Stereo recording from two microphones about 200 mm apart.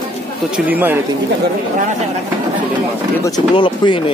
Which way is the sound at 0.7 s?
10° right (ahead or behind).